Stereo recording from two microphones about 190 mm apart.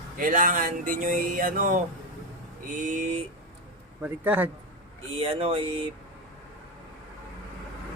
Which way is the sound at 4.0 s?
10° right (ahead or behind).